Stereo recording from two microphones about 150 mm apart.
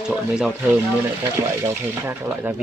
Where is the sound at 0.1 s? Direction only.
5° right (ahead or behind).